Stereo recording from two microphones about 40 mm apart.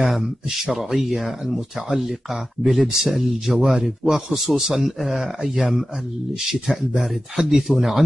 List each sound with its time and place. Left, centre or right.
0.0 s speech: centre
7.0 s speech: centre